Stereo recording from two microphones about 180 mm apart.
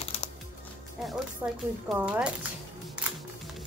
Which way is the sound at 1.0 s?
Centre (ahead or behind).